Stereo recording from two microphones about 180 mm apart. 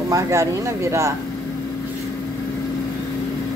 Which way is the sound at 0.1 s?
15° right (ahead or behind).